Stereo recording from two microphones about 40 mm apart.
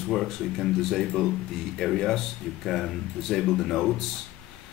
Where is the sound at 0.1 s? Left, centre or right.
Centre.